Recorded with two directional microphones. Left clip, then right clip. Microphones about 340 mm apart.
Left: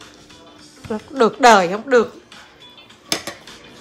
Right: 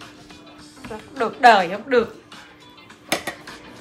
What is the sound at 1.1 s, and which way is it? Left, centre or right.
Speech, left.